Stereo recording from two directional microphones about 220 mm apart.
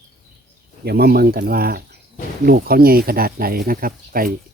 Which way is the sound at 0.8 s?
45° right (ahead or behind).